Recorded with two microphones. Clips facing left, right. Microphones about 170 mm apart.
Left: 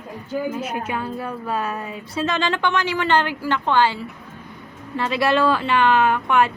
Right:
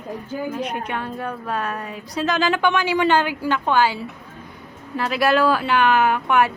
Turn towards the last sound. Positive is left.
turn(degrees=-5)  # may be behind; listen again after turning